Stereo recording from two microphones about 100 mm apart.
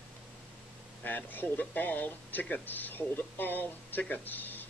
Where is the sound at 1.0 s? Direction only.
20° left (ahead or behind).